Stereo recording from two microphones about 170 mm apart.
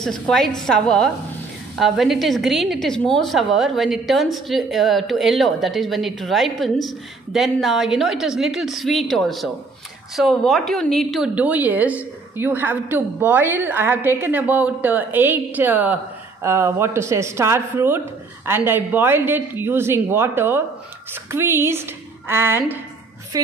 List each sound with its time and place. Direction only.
0.0 s a woman's voice: centre (ahead or behind); by 23.5 s 20° right (ahead or behind)